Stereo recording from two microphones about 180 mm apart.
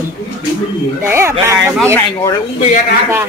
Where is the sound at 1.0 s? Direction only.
15° right (ahead or behind).